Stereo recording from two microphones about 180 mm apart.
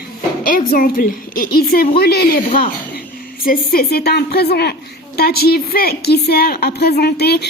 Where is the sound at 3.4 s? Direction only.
55° left (ahead or behind).